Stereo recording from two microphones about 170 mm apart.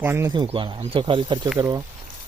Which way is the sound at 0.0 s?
15° right (ahead or behind).